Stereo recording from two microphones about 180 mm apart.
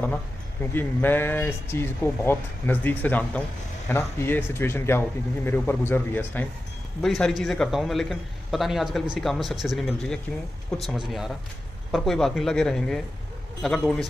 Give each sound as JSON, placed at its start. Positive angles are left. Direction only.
{"t": 0.7, "sound": "a man's voice", "side_deg": 10}
{"t": 11.9, "sound": "a man's voice", "side_deg": 0}